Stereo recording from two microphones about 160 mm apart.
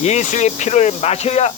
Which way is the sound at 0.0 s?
45° left (ahead or behind).